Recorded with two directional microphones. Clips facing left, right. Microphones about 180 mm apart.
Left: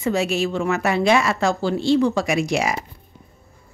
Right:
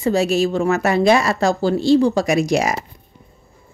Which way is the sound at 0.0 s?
35° right (ahead or behind).